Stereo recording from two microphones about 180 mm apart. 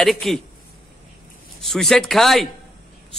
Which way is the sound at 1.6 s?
Centre (ahead or behind).